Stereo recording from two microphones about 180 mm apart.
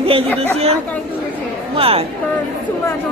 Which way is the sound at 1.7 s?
30° right (ahead or behind).